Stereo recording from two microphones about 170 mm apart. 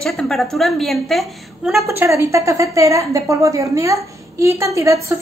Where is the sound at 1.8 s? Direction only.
15° right (ahead or behind).